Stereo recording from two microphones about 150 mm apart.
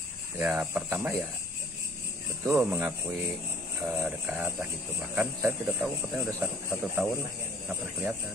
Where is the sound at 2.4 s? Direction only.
10° right (ahead or behind).